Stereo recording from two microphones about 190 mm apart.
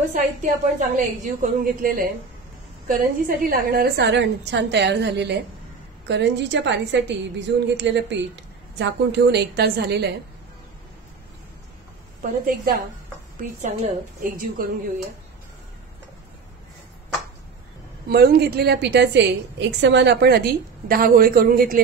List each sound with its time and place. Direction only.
0.1 s a woman's voice: 40° right (ahead or behind); by 10.1 s 60° right (ahead or behind)
12.2 s speech: 45° right (ahead or behind)
18.1 s a woman's voice: 55° right (ahead or behind)